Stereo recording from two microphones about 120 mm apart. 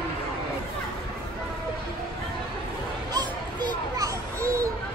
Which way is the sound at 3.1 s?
30° right (ahead or behind).